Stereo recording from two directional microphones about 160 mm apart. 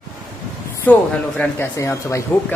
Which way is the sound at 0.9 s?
10° left (ahead or behind).